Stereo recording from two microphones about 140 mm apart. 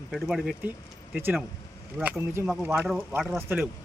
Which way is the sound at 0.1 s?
5° right (ahead or behind).